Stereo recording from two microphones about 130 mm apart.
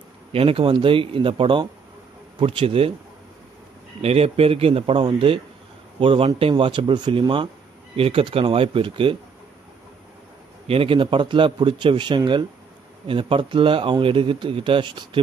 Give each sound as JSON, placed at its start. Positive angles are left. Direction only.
{"t": 0.3, "sound": "speech", "side_deg": -45}
{"t": 4.0, "sound": "speech", "side_deg": -50}
{"t": 10.7, "sound": "speech", "side_deg": -45}